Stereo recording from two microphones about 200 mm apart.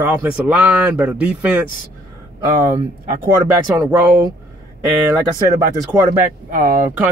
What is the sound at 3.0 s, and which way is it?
Speech, 40° right (ahead or behind).